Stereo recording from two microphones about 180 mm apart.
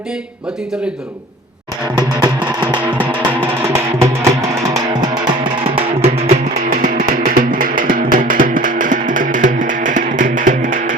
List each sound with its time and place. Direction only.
2.0 s music: 20° right (ahead or behind)
3.9 s music: 15° right (ahead or behind); by 6.4 s 35° right (ahead or behind)
6.7 s music: 50° right (ahead or behind)